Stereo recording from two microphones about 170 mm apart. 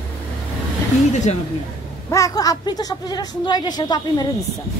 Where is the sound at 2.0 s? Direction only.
20° left (ahead or behind).